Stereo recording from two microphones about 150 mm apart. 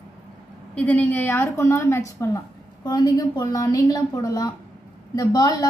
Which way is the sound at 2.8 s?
30° left (ahead or behind).